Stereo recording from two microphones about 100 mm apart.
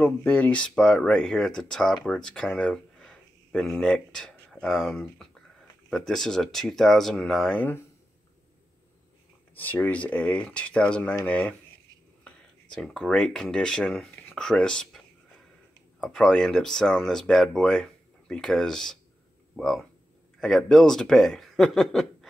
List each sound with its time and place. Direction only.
0.0 s speech: 20° left (ahead or behind); by 7.5 s centre (ahead or behind)
7.5 s speech: 15° left (ahead or behind)
9.6 s speech: 20° left (ahead or behind)
16.0 s speech: 5° left (ahead or behind)